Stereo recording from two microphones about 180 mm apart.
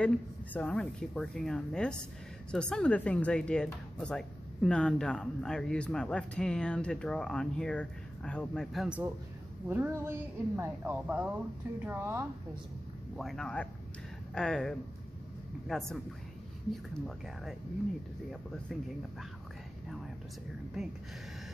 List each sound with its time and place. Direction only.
0.0 s speech: 5° left (ahead or behind); by 12.3 s 10° right (ahead or behind)
13.1 s speech: centre (ahead or behind)